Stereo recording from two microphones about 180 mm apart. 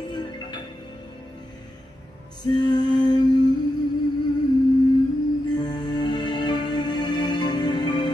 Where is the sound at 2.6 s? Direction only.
25° left (ahead or behind).